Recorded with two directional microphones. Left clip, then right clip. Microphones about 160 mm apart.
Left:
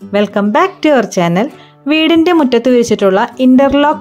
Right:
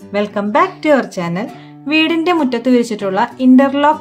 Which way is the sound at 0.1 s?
45° left (ahead or behind).